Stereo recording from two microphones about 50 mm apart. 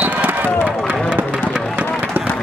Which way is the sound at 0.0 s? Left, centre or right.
Right.